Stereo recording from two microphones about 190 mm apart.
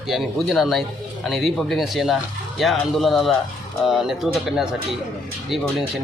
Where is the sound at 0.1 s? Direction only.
Centre (ahead or behind).